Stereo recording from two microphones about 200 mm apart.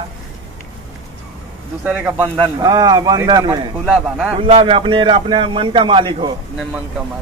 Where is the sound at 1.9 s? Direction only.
10° right (ahead or behind).